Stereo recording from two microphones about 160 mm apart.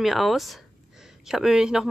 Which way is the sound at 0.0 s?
Centre (ahead or behind).